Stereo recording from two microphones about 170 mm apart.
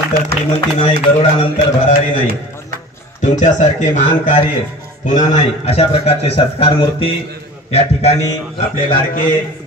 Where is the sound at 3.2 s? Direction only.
45° left (ahead or behind).